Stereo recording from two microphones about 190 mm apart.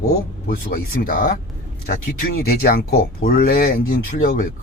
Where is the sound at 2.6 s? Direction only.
50° left (ahead or behind).